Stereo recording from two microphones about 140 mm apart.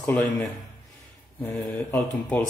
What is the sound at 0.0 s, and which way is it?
Speech, 10° left (ahead or behind).